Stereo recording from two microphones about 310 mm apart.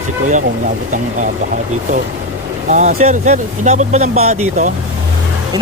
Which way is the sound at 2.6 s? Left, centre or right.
Right.